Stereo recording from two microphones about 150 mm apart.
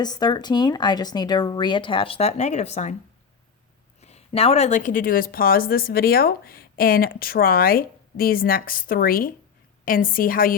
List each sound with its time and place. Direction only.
0.0 s speech: 25° left (ahead or behind); by 2.9 s 50° left (ahead or behind)
4.0 s a woman's voice: 45° left (ahead or behind); by 10.5 s 70° left (ahead or behind)